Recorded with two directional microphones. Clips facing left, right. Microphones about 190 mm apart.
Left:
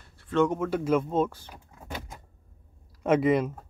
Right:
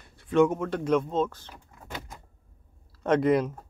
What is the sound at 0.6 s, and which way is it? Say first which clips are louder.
Speech: even; 5° left (ahead or behind).